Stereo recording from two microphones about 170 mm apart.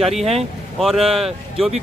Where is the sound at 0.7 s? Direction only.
Centre (ahead or behind).